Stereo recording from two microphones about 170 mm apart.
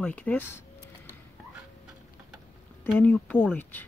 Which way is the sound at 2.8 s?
10° left (ahead or behind).